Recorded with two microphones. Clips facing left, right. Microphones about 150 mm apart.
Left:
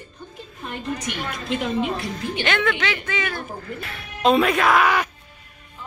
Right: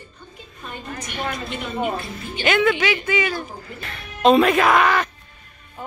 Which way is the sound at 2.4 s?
10° right (ahead or behind).